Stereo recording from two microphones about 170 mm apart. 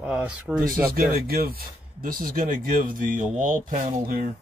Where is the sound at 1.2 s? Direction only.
60° right (ahead or behind).